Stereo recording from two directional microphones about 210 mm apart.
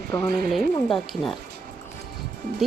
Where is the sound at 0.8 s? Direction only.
Centre (ahead or behind).